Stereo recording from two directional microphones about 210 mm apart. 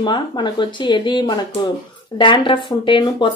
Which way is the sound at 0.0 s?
20° left (ahead or behind).